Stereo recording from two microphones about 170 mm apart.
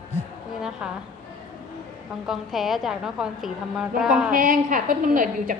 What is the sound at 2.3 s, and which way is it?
A woman's voice, centre (ahead or behind).